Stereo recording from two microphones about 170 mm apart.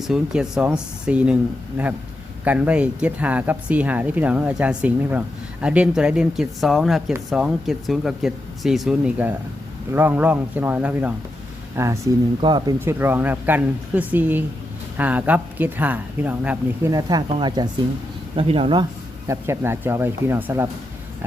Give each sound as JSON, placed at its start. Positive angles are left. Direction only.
{"t": 0.1, "sound": "speech", "side_deg": -5}
{"t": 12.4, "sound": "speech", "side_deg": -25}
{"t": 12.8, "sound": "speech", "side_deg": -15}
{"t": 16.9, "sound": "speech", "side_deg": -20}
{"t": 18.3, "sound": "speech", "side_deg": -35}
{"t": 19.3, "sound": "speech", "side_deg": -15}